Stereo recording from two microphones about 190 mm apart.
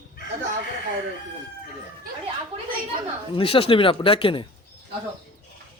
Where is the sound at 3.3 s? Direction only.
30° left (ahead or behind).